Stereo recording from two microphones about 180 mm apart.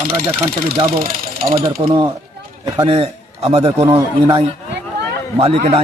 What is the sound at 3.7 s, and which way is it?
Speech, 15° right (ahead or behind).